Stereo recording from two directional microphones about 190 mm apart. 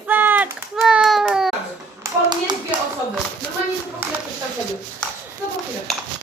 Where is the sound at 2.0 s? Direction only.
20° right (ahead or behind).